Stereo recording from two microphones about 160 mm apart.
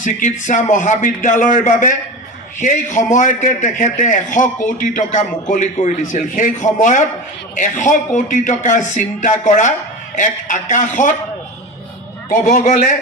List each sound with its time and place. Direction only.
0.0 s speech: 50° left (ahead or behind)
12.3 s speech: 55° left (ahead or behind)